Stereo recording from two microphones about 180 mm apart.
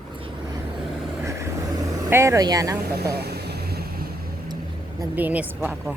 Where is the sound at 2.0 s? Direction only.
15° right (ahead or behind).